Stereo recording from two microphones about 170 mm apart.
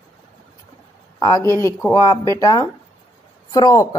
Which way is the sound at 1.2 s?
20° left (ahead or behind).